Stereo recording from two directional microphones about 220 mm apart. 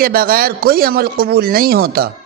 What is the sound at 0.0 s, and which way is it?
Speech, 45° right (ahead or behind).